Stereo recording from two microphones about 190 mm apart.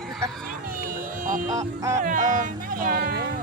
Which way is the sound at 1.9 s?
40° right (ahead or behind).